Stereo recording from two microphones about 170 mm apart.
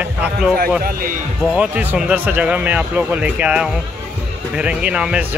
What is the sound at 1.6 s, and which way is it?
Speech, 5° right (ahead or behind).